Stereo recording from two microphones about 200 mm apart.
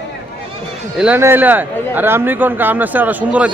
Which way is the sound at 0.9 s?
10° right (ahead or behind).